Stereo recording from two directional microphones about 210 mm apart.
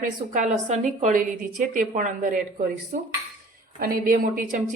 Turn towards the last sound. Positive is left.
turn(degrees=-40)  # may be behind; listen again after turning